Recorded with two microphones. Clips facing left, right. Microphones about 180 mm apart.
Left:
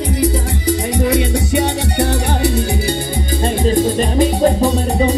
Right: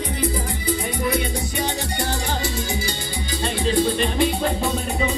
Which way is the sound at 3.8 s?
40° left (ahead or behind).